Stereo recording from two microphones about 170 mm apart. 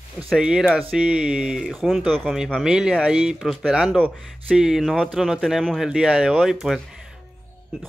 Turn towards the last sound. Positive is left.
turn(degrees=0)  # may be behind; listen again after turning